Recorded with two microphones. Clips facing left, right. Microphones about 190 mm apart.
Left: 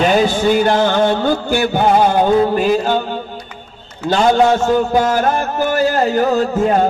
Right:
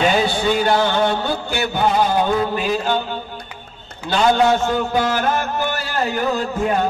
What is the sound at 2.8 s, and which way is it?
Mantra, 45° left (ahead or behind).